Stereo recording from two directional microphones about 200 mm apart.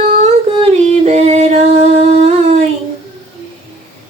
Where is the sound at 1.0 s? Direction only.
35° right (ahead or behind).